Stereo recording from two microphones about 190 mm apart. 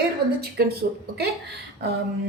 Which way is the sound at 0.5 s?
60° right (ahead or behind).